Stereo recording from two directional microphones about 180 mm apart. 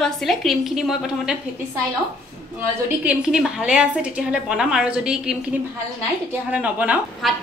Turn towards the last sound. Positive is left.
turn(degrees=-5)  # may be behind; listen again after turning